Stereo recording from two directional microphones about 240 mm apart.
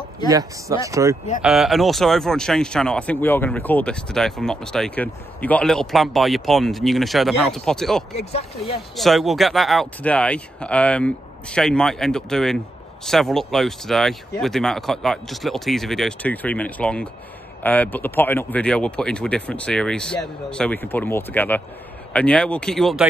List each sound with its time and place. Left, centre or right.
0.3 s speech: centre
1.4 s speech: centre
8.2 s speech: left
8.9 s speech: centre